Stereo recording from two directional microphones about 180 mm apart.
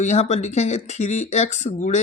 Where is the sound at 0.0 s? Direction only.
40° left (ahead or behind).